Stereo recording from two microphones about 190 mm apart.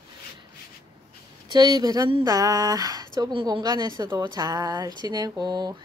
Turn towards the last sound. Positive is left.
turn(degrees=-20)  # may be behind; listen again after turning